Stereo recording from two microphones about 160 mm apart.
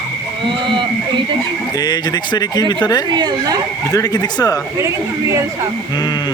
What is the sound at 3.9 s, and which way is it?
Speech, 25° left (ahead or behind).